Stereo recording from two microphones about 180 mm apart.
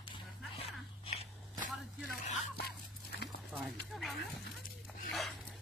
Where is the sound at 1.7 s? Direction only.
Centre (ahead or behind).